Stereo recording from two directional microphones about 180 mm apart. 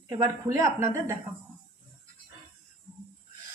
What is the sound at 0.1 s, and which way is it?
A woman's voice, 15° right (ahead or behind).